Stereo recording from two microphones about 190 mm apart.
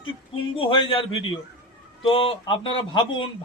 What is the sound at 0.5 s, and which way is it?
Speech, 25° left (ahead or behind).